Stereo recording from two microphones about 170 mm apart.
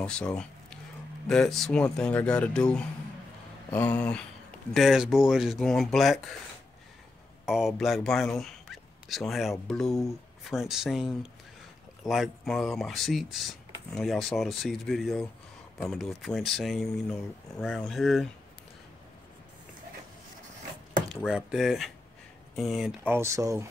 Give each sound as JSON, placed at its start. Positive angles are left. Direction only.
{"t": 0.0, "sound": "speech", "side_deg": 5}
{"t": 3.7, "sound": "a sound", "side_deg": 10}
{"t": 4.7, "sound": "speech", "side_deg": 0}
{"t": 7.4, "sound": "speech", "side_deg": 0}
{"t": 21.3, "sound": "speech", "side_deg": -5}
{"t": 23.1, "sound": "speech", "side_deg": -15}